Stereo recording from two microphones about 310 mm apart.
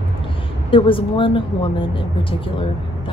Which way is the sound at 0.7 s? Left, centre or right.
Centre.